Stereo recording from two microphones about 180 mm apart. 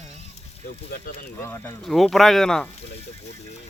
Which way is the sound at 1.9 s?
Centre (ahead or behind).